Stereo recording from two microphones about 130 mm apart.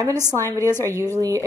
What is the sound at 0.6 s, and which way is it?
Speech, 20° left (ahead or behind).